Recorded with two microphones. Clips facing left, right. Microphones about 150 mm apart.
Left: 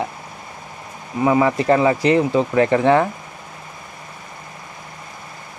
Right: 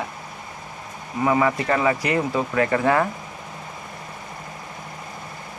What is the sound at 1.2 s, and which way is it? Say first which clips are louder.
Speech: left 4 dB; 20° left (ahead or behind).